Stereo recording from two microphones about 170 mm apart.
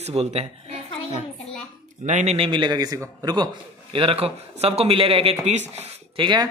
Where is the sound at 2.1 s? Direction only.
45° right (ahead or behind); by 3.5 s 20° right (ahead or behind).